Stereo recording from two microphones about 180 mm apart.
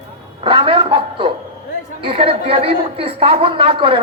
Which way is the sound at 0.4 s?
30° right (ahead or behind).